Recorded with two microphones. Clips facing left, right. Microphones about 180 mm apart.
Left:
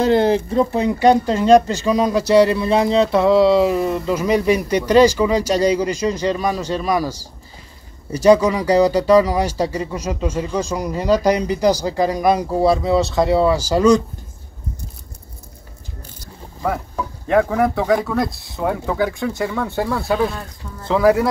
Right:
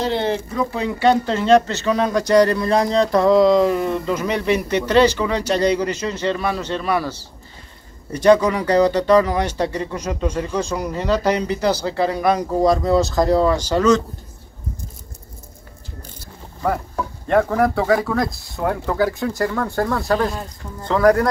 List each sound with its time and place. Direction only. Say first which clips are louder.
0.0 s speech: left 6 dB; 45° left (ahead or behind)
0.7 s speech: left 2 dB; 15° left (ahead or behind)
16.6 s speech: right 1 dB; centre (ahead or behind)